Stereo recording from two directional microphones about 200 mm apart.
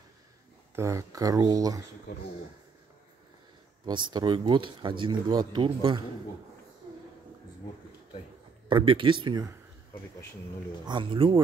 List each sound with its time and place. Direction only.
0.7 s speech: 15° right (ahead or behind)
3.8 s speech: 20° right (ahead or behind)
8.6 s speech: 25° right (ahead or behind)
10.9 s speech: 25° right (ahead or behind)